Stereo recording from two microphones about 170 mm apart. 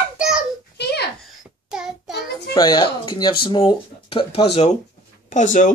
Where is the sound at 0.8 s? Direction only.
75° left (ahead or behind).